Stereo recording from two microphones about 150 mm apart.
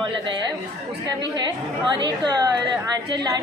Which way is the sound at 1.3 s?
30° right (ahead or behind).